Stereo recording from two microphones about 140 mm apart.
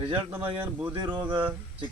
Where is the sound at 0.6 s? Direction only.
10° right (ahead or behind).